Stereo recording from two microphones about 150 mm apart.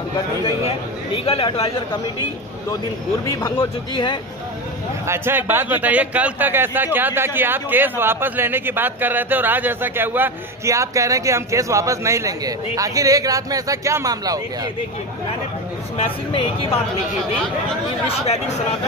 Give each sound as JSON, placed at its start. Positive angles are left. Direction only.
{"t": 0.7, "sound": "speech", "side_deg": 40}
{"t": 3.3, "sound": "speech", "side_deg": 20}
{"t": 3.9, "sound": "speech", "side_deg": 35}
{"t": 5.0, "sound": "a man's voice", "side_deg": -15}
{"t": 18.0, "sound": "speech", "side_deg": 45}